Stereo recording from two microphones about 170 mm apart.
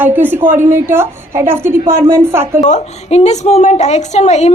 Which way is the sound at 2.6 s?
40° left (ahead or behind).